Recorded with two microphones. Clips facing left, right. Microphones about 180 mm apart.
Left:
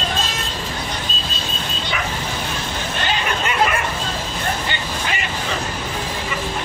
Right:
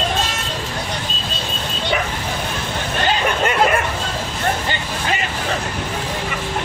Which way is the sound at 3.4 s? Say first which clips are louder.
Right 3 dB; 45° right (ahead or behind).